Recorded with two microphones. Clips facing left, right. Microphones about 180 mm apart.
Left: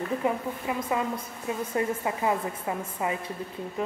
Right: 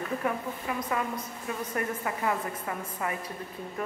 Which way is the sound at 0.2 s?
20° left (ahead or behind).